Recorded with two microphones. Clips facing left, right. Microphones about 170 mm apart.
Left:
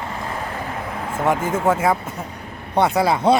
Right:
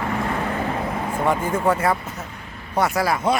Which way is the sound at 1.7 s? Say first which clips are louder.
Left 2 dB; 10° left (ahead or behind).